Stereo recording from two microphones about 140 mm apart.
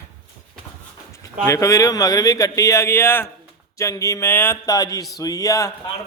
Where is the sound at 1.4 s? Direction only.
20° left (ahead or behind).